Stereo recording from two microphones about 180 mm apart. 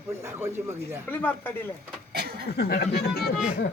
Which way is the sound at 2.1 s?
60° right (ahead or behind).